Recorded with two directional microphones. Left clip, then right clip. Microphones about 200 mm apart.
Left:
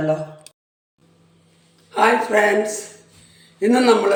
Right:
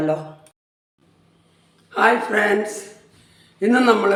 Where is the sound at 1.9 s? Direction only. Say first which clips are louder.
Left 1 dB; 20° right (ahead or behind).